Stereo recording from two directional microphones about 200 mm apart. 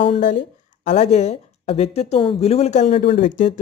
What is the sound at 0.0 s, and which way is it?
Speech, 35° left (ahead or behind).